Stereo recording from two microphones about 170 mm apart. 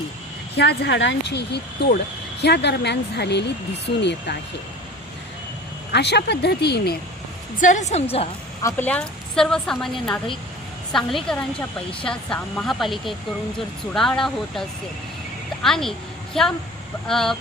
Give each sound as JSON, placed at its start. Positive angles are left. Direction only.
{"t": 0.5, "sound": "a woman's voice", "side_deg": 75}
{"t": 5.9, "sound": "speech", "side_deg": 80}
{"t": 7.6, "sound": "a woman's voice", "side_deg": 45}
{"t": 8.6, "sound": "speech", "side_deg": 10}
{"t": 15.6, "sound": "a woman's voice", "side_deg": 0}